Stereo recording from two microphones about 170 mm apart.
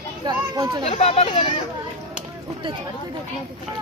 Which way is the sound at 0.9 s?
35° left (ahead or behind).